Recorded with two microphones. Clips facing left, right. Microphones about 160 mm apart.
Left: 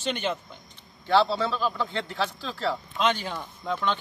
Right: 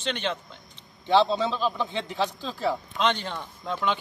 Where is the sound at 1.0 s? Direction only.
20° right (ahead or behind).